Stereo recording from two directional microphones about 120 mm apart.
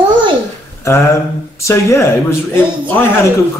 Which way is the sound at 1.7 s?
25° left (ahead or behind).